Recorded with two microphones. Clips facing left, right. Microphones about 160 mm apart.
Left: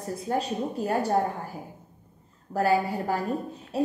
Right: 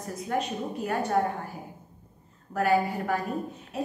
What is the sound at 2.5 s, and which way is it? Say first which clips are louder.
Speech: left 1 dB; 30° left (ahead or behind).